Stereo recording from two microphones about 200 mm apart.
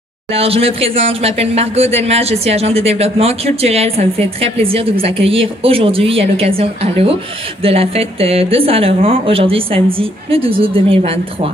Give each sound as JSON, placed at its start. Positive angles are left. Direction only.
{"t": 0.3, "sound": "speech", "side_deg": -30}